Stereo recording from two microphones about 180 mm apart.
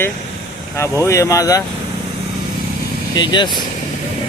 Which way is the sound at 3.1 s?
25° left (ahead or behind).